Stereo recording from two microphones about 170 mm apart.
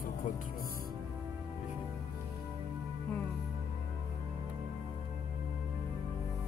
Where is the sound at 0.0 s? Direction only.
55° left (ahead or behind).